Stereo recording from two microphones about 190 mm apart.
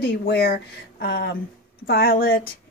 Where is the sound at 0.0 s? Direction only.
55° left (ahead or behind).